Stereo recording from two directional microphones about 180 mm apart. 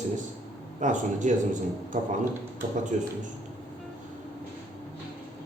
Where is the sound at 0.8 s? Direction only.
45° right (ahead or behind).